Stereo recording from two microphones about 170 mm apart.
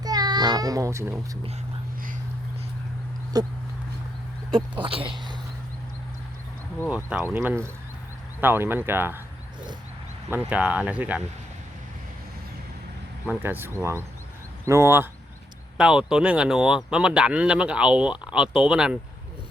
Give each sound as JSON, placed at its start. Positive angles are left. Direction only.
{"t": 0.0, "sound": "a sound", "side_deg": -25}
{"t": 3.3, "sound": "speech", "side_deg": -20}
{"t": 4.5, "sound": "speech", "side_deg": -30}
{"t": 6.9, "sound": "speech", "side_deg": -5}
{"t": 8.4, "sound": "speech", "side_deg": -10}
{"t": 10.2, "sound": "speech", "side_deg": -10}
{"t": 13.2, "sound": "speech", "side_deg": -10}